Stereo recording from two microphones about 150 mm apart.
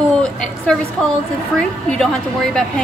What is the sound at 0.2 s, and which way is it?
Speech, 5° left (ahead or behind).